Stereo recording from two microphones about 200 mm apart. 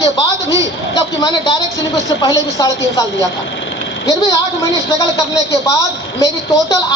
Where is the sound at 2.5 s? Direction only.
15° left (ahead or behind).